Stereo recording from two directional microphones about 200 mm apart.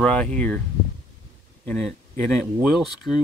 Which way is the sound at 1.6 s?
5° left (ahead or behind).